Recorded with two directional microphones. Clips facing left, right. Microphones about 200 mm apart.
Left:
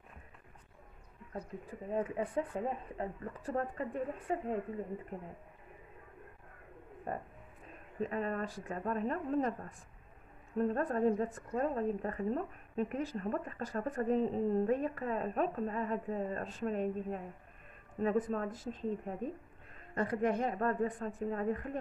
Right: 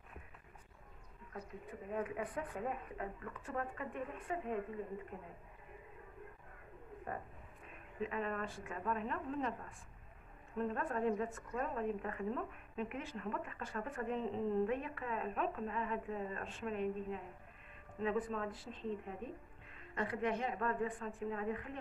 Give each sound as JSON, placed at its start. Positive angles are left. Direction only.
{"t": 1.3, "sound": "a woman's voice", "side_deg": 30}
{"t": 8.0, "sound": "a woman's voice", "side_deg": 40}